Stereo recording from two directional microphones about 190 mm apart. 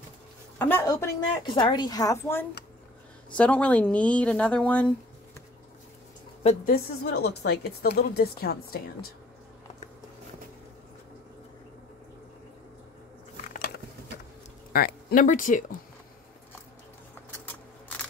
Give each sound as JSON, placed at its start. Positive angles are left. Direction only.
{"t": 0.6, "sound": "a woman's voice", "side_deg": 10}
{"t": 6.4, "sound": "a woman's voice", "side_deg": 50}
{"t": 13.5, "sound": "a sound", "side_deg": 55}
{"t": 14.7, "sound": "speech", "side_deg": 50}